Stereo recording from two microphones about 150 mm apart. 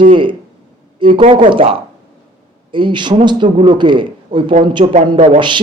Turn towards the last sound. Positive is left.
turn(degrees=-30)  # may be behind; listen again after turning